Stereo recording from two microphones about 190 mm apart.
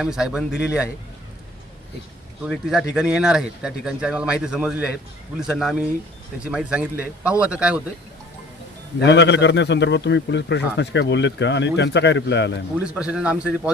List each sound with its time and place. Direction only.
0.0 s speech: 5° right (ahead or behind)
2.5 s speech: centre (ahead or behind)
9.0 s a man's voice: 65° left (ahead or behind)
12.8 s speech: 5° right (ahead or behind)